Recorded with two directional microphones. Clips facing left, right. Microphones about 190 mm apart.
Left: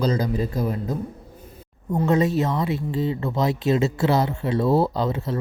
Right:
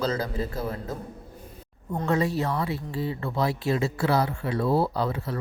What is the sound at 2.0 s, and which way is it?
Speech, 20° left (ahead or behind).